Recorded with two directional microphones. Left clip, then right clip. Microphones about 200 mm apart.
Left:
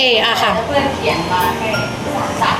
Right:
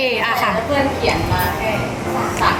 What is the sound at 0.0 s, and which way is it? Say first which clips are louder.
Speech: left 4 dB; 20° right (ahead or behind).